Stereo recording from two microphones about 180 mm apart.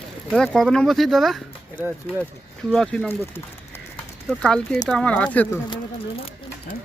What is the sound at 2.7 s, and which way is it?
Speech, 5° left (ahead or behind).